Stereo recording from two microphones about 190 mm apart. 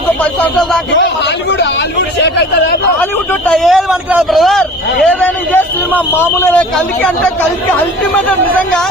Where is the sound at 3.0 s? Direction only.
10° left (ahead or behind).